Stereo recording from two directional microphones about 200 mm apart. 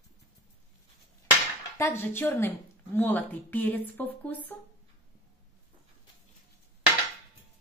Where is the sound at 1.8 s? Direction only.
10° left (ahead or behind).